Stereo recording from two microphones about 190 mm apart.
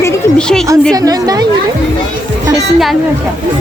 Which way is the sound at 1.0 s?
20° right (ahead or behind).